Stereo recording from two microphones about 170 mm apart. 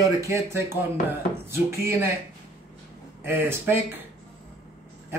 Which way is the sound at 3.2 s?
15° right (ahead or behind).